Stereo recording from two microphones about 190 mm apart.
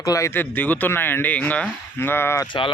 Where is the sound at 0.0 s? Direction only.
15° left (ahead or behind).